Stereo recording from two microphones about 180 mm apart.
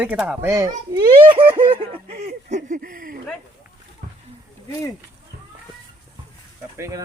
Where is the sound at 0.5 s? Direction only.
15° right (ahead or behind).